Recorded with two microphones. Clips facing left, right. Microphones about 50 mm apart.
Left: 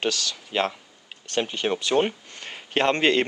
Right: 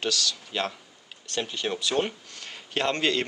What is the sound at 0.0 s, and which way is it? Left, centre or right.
Speech, left.